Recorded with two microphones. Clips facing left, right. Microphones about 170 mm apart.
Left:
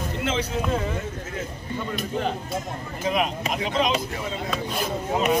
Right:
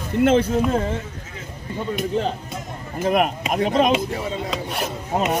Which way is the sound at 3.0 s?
50° right (ahead or behind).